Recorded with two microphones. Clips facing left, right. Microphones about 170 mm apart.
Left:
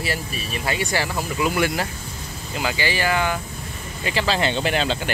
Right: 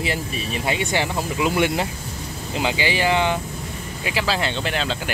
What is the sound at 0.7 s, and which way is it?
Speech, 20° right (ahead or behind).